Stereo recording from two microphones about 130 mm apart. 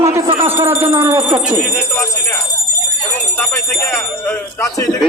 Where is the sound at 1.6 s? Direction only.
Centre (ahead or behind).